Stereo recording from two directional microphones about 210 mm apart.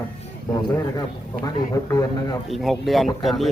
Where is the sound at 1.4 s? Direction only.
15° left (ahead or behind).